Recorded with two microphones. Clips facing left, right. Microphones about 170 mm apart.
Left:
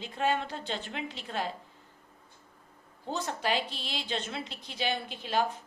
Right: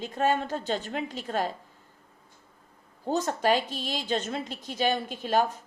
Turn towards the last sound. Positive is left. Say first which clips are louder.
# right 4 dB
turn(degrees=-45)  # may be behind; listen again after turning